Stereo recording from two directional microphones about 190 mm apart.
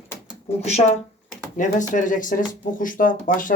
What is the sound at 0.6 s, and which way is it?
Speech, 35° left (ahead or behind).